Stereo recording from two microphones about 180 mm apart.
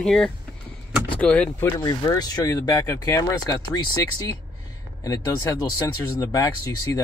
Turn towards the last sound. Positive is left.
turn(degrees=20)  # may be behind; listen again after turning